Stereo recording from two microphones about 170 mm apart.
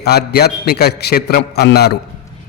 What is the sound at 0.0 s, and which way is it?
A man's voice, 70° left (ahead or behind).